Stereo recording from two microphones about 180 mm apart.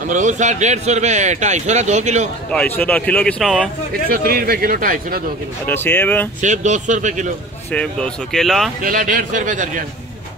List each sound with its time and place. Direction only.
0.1 s a man's voice: 45° right (ahead or behind)
2.5 s speech: 10° left (ahead or behind)
4.1 s speech: 55° right (ahead or behind)
5.7 s speech: 10° left (ahead or behind)
6.4 s speech: 40° right (ahead or behind)
7.7 s speech: 5° left (ahead or behind)
8.8 s speech: 50° right (ahead or behind)